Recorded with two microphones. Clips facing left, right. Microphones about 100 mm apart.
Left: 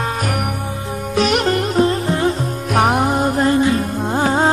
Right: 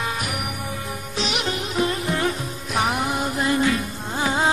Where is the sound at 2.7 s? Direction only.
50° left (ahead or behind).